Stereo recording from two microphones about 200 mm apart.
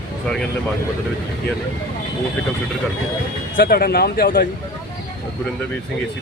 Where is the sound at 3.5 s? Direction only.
50° left (ahead or behind).